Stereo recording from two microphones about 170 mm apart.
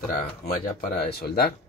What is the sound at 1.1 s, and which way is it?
Speech, 70° left (ahead or behind).